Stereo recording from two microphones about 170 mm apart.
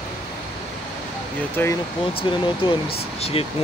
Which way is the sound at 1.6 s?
10° left (ahead or behind).